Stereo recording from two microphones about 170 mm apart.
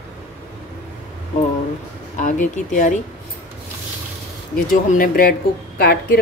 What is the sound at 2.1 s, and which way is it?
Speech, 50° left (ahead or behind).